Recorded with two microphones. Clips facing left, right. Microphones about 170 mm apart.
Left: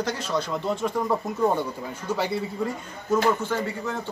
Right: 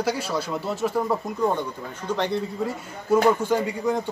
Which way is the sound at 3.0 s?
10° right (ahead or behind).